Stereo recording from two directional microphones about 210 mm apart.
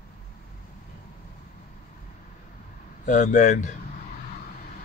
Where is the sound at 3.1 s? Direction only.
35° left (ahead or behind).